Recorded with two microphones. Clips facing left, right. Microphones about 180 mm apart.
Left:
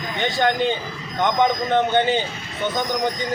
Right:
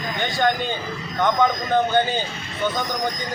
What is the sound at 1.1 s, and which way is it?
Speech, 20° left (ahead or behind).